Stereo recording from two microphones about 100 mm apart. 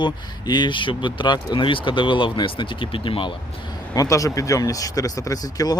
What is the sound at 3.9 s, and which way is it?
Speech, 35° left (ahead or behind).